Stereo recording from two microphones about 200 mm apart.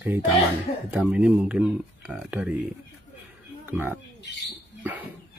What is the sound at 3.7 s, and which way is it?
Speech, 10° right (ahead or behind).